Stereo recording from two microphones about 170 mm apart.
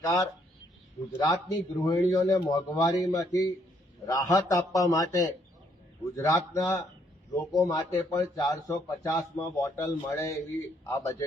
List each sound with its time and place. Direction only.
0.0 s a man's voice: 20° left (ahead or behind)